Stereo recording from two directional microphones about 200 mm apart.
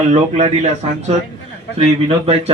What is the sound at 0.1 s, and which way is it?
Speech, 35° right (ahead or behind).